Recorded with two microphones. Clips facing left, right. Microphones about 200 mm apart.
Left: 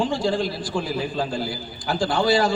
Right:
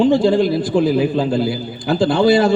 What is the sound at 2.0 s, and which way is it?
Speech, 60° right (ahead or behind).